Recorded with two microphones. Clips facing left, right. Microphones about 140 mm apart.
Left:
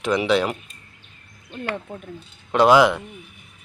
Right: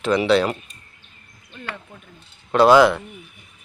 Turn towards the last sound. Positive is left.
turn(degrees=15)  # may be behind; listen again after turning